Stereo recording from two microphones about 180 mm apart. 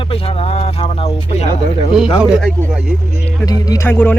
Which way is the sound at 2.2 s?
Centre (ahead or behind).